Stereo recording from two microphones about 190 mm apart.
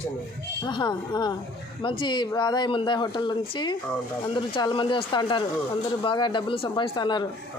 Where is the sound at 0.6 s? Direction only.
25° left (ahead or behind).